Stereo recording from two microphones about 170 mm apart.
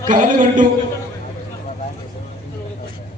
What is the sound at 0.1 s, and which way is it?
Speech, 50° right (ahead or behind).